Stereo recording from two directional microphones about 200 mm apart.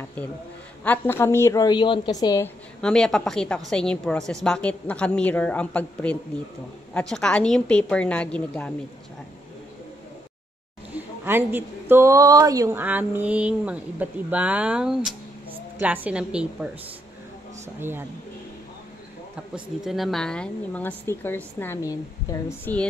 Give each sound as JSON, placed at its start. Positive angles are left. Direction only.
{"t": 0.8, "sound": "a woman's voice", "side_deg": 10}
{"t": 2.8, "sound": "a woman's voice", "side_deg": 5}
{"t": 10.9, "sound": "a woman's voice", "side_deg": -10}
{"t": 17.7, "sound": "speech", "side_deg": -10}
{"t": 19.5, "sound": "a woman's voice", "side_deg": 0}